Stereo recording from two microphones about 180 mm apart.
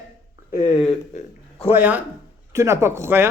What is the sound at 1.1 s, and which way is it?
Speech, 35° left (ahead or behind).